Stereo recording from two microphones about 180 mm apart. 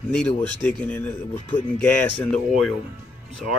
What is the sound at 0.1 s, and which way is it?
Speech, 5° left (ahead or behind).